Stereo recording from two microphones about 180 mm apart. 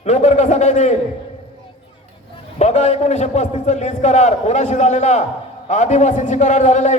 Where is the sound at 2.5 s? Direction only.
40° left (ahead or behind).